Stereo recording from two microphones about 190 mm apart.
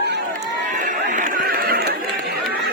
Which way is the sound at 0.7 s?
40° right (ahead or behind).